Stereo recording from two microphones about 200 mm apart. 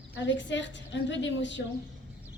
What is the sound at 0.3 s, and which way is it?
A woman's voice, 65° left (ahead or behind).